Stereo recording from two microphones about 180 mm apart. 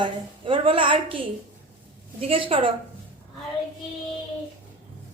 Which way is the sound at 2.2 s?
30° right (ahead or behind).